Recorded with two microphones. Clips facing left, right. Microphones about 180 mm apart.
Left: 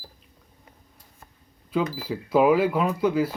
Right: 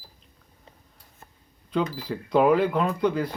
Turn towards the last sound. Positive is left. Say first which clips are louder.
# left 2 dB
turn(degrees=5)  # may be behind; listen again after turning